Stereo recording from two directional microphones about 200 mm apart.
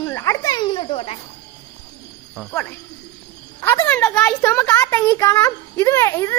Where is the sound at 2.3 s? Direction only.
5° left (ahead or behind).